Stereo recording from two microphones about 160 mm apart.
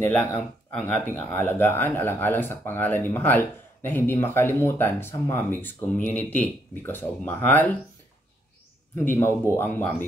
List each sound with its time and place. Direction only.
0.0 s speech: 15° left (ahead or behind)
8.9 s speech: 15° left (ahead or behind)